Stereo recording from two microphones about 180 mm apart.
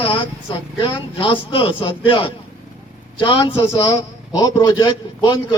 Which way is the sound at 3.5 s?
15° left (ahead or behind).